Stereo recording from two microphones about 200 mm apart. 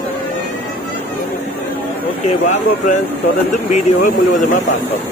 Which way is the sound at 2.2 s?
40° left (ahead or behind).